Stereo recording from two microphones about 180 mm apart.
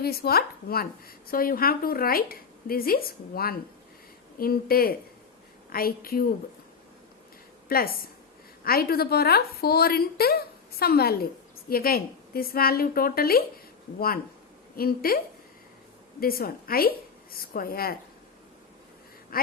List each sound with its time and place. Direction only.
0.0 s a woman's voice: 60° left (ahead or behind)
7.7 s a woman's voice: 55° left (ahead or behind)
14.8 s a woman's voice: 55° left (ahead or behind)
16.2 s a woman's voice: 55° left (ahead or behind)
19.3 s quack: 55° left (ahead or behind)